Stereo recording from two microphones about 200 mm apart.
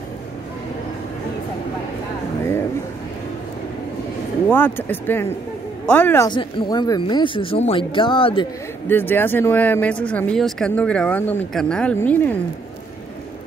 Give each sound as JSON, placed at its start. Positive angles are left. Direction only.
{"t": 4.5, "sound": "speech", "side_deg": 10}
{"t": 8.8, "sound": "speech", "side_deg": 10}